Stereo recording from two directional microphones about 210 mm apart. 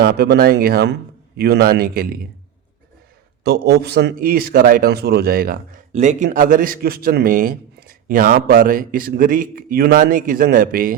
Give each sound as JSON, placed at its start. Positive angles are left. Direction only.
{"t": 0.0, "sound": "a man's voice", "side_deg": -50}
{"t": 3.4, "sound": "a man's voice", "side_deg": -50}